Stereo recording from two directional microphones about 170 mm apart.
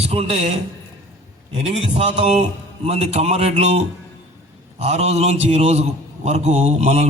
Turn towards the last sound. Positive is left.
turn(degrees=-40)  # may be behind; listen again after turning